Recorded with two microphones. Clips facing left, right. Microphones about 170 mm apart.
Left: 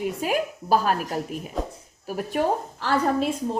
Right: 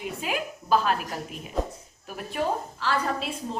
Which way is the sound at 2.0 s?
45° left (ahead or behind).